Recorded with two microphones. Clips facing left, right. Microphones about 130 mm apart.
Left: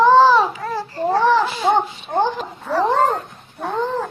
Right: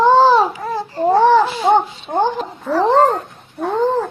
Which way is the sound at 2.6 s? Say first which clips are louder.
Right 4 dB; centre (ahead or behind).